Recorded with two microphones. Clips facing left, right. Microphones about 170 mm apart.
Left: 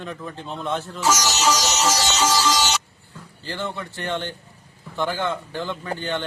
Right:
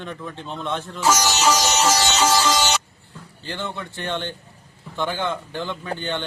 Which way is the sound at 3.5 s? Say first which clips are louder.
Left 1 dB; centre (ahead or behind).